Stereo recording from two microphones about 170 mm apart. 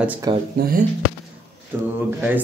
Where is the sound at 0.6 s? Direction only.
60° right (ahead or behind).